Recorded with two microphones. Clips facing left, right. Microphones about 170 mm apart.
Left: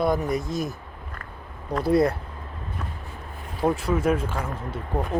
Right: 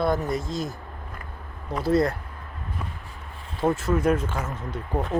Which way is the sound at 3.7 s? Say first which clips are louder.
Right 2 dB; 10° left (ahead or behind).